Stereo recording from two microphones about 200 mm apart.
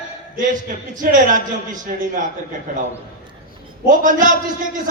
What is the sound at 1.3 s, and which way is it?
Speech, 40° right (ahead or behind).